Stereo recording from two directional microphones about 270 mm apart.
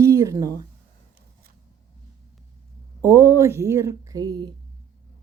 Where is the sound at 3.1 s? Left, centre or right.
Centre.